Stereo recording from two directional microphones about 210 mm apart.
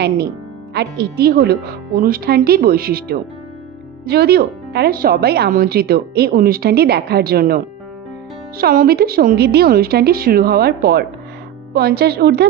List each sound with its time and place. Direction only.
0.7 s a woman's voice: 50° right (ahead or behind)